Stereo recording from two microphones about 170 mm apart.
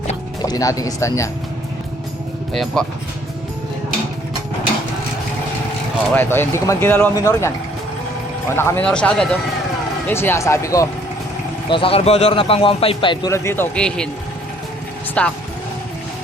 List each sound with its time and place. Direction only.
0.4 s speech: 20° left (ahead or behind)
2.5 s speech: centre (ahead or behind)
6.1 s speech: 15° left (ahead or behind)
8.5 s speech: 15° left (ahead or behind)
11.7 s speech: 35° left (ahead or behind)
13.3 s speech: 15° left (ahead or behind)
15.2 s speech: 5° left (ahead or behind)